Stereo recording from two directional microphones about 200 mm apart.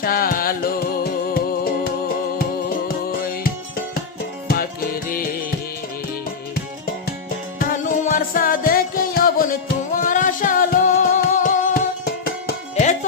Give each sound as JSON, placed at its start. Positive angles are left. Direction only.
{"t": 0.0, "sound": "music", "side_deg": 45}
{"t": 7.6, "sound": "music", "side_deg": 40}
{"t": 12.7, "sound": "music", "side_deg": 35}